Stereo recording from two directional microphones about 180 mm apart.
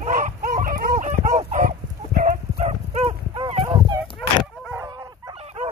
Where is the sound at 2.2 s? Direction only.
40° right (ahead or behind); by 5.3 s 20° right (ahead or behind).